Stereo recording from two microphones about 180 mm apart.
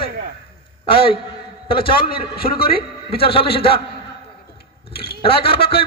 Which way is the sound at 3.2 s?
30° left (ahead or behind).